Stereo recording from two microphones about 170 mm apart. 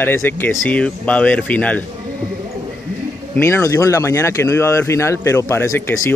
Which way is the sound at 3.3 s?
15° left (ahead or behind).